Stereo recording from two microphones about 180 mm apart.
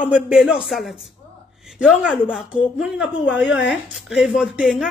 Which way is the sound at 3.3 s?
90° left.